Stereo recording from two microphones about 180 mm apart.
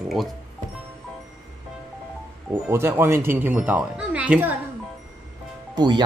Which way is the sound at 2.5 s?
15° right (ahead or behind).